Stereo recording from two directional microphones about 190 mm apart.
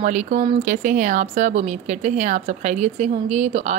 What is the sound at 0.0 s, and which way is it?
A woman's voice, 40° right (ahead or behind).